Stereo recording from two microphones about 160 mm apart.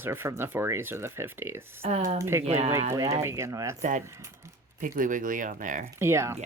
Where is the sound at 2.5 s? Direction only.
40° right (ahead or behind).